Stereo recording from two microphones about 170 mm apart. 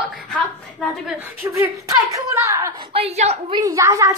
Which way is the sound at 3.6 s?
20° right (ahead or behind).